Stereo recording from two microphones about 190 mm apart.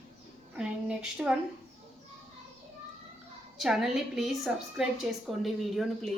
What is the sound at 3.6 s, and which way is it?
A woman's voice, centre (ahead or behind).